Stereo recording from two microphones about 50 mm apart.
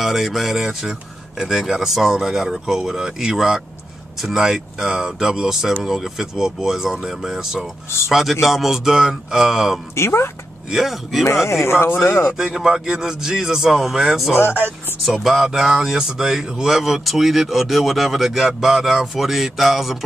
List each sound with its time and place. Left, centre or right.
0.0 s speech: centre
9.9 s speech: left
10.7 s speech: centre
11.2 s speech: left
11.8 s speech: left
12.4 s speech: centre